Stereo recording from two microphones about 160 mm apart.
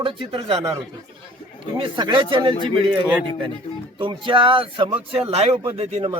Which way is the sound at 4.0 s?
30° right (ahead or behind).